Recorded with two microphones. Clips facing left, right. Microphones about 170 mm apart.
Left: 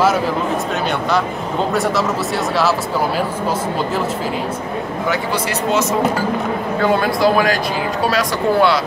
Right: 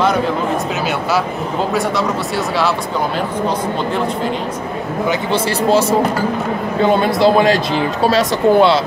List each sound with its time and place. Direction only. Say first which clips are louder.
1.7 s speech: left 1 dB; centre (ahead or behind)
5.3 s speech: right 7 dB; 30° right (ahead or behind)